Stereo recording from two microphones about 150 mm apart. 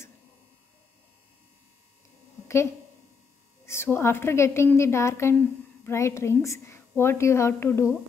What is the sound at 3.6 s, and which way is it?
A woman's voice, 15° left (ahead or behind).